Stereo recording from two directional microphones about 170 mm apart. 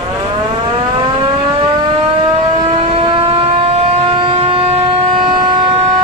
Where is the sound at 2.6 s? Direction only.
35° right (ahead or behind).